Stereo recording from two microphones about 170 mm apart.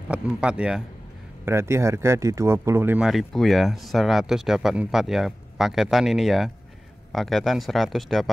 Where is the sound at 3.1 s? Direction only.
Centre (ahead or behind).